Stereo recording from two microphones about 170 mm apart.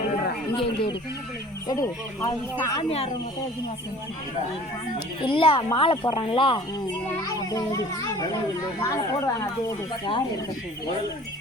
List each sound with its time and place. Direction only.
0.5 s speech: 30° left (ahead or behind)
5.2 s speech: 30° left (ahead or behind)
8.8 s speech: 15° left (ahead or behind)